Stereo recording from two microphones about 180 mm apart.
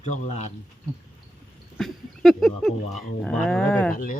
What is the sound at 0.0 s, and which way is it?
Speech, 40° left (ahead or behind).